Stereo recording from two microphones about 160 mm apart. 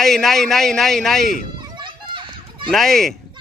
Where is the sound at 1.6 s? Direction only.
30° right (ahead or behind).